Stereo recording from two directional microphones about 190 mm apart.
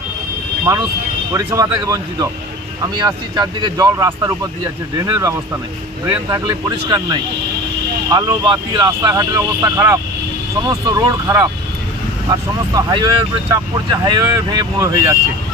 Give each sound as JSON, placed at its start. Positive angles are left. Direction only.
{"t": 0.7, "sound": "speech", "side_deg": -15}